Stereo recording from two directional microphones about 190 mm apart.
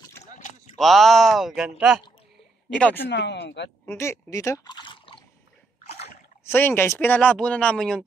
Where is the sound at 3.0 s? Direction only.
65° left (ahead or behind).